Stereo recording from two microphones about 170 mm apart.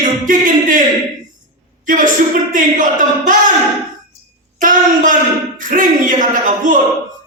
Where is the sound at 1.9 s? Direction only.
50° right (ahead or behind).